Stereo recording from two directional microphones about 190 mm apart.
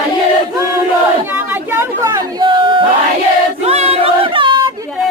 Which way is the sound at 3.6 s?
35° right (ahead or behind).